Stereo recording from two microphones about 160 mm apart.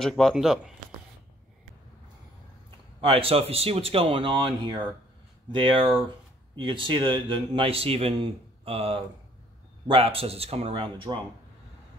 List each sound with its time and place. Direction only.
0.0 s speech: centre (ahead or behind)
3.0 s speech: 35° right (ahead or behind)